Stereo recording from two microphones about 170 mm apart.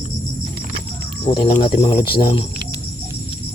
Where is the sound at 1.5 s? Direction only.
35° left (ahead or behind).